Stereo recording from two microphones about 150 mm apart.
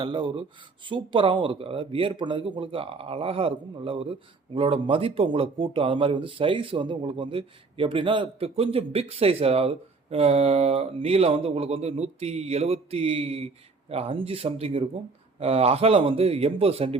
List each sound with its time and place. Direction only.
0.0 s speech: 35° right (ahead or behind)